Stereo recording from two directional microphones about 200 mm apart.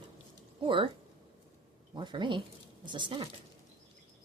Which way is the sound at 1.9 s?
25° right (ahead or behind).